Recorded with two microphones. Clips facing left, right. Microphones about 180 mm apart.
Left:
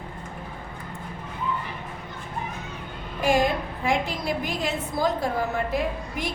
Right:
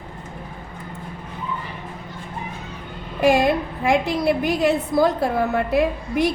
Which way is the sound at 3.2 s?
70° right (ahead or behind).